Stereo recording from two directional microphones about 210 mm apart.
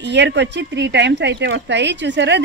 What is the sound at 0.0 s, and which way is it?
Speech, 55° right (ahead or behind).